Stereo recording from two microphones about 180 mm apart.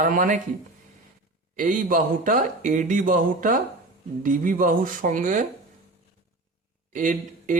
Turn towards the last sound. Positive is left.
turn(degrees=-45)  # may be behind; listen again after turning